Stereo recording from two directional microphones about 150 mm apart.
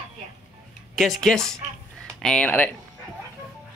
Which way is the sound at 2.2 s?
10° left (ahead or behind).